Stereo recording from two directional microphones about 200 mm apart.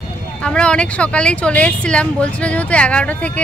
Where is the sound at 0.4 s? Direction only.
5° left (ahead or behind).